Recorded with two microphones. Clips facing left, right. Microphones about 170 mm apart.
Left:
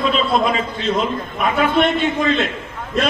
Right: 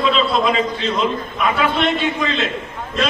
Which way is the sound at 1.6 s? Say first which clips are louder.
Left 4 dB; 50° left (ahead or behind).